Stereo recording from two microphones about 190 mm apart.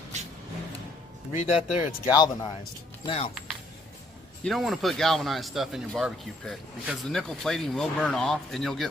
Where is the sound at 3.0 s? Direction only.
25° left (ahead or behind).